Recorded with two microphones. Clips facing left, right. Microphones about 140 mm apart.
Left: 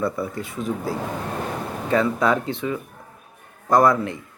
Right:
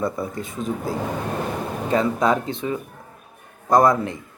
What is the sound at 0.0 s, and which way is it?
Speech, 20° right (ahead or behind).